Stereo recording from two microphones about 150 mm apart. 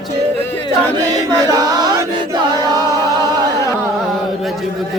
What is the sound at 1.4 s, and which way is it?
Music, 25° right (ahead or behind).